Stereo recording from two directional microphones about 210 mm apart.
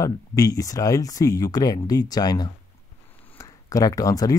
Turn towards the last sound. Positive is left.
turn(degrees=15)  # may be behind; listen again after turning